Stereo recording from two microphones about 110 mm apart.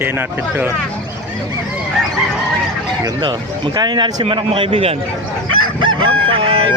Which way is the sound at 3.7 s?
40° right (ahead or behind).